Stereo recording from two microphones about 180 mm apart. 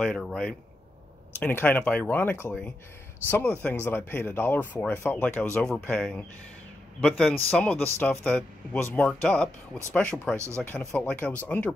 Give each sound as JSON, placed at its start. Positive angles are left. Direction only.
{"t": 0.0, "sound": "speech", "side_deg": 5}
{"t": 10.3, "sound": "speech", "side_deg": -15}
{"t": 10.6, "sound": "speech", "side_deg": 10}